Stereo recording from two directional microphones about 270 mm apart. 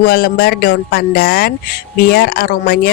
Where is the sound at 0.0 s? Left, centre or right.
Left.